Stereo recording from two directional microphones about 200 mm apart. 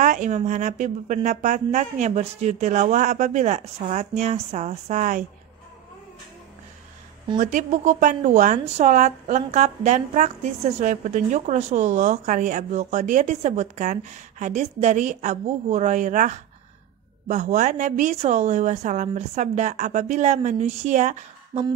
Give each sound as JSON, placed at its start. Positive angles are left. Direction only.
{"t": 0.0, "sound": "a woman's voice", "side_deg": -40}
{"t": 7.3, "sound": "a woman's voice", "side_deg": -40}